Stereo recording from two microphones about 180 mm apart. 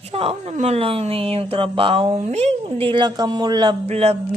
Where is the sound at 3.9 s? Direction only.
35° right (ahead or behind).